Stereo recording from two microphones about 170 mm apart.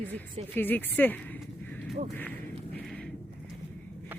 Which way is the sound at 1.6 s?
10° left (ahead or behind).